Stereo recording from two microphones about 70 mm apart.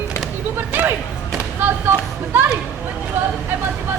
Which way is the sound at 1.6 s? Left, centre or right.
Right.